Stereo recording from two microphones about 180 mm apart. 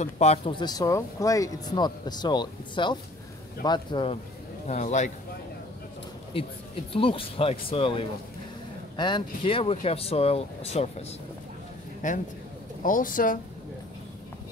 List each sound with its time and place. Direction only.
0.0 s speech: 35° left (ahead or behind)
4.6 s speech: 40° left (ahead or behind)
6.3 s speech: 30° left (ahead or behind)
12.0 s speech: 45° left (ahead or behind)